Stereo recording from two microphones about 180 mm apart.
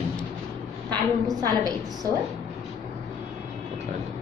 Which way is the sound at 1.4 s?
20° right (ahead or behind).